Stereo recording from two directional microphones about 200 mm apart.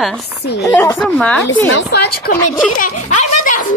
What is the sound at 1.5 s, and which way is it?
Speech, 60° left (ahead or behind).